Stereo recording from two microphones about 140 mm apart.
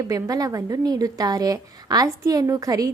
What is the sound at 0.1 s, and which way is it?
A woman's voice, 25° right (ahead or behind).